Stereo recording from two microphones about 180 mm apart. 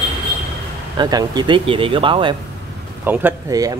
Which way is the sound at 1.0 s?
25° right (ahead or behind).